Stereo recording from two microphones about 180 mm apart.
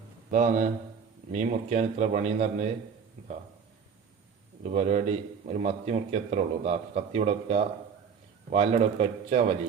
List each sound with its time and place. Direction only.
0.3 s a man's voice: 45° right (ahead or behind)
4.7 s a man's voice: 40° right (ahead or behind)